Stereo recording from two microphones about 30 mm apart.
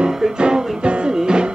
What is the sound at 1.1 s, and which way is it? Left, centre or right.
Music, right.